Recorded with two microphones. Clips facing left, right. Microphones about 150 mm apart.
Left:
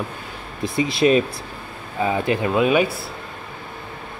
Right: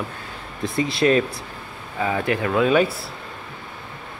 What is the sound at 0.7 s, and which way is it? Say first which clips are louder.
Speech: left 2 dB; 15° left (ahead or behind).